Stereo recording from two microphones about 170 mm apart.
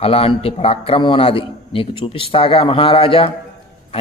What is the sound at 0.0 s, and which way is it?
A man's voice, 35° left (ahead or behind).